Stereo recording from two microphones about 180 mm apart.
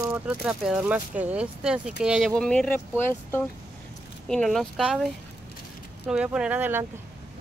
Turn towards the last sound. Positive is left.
turn(degrees=-10)  # may be behind; listen again after turning